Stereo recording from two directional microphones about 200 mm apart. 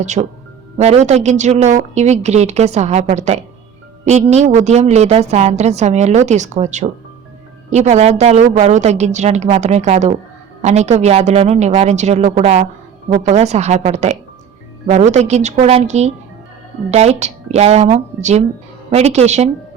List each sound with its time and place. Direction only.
0.0 s a woman's voice: 35° right (ahead or behind)